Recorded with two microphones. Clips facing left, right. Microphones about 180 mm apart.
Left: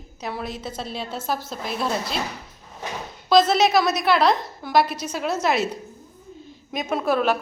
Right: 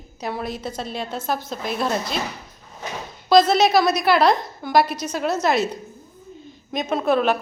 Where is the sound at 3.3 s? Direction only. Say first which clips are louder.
Right 2 dB; 5° left (ahead or behind).